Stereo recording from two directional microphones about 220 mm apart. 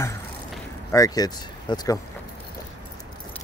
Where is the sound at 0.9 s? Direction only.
15° left (ahead or behind).